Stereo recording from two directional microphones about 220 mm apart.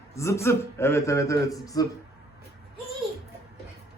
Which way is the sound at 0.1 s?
15° left (ahead or behind).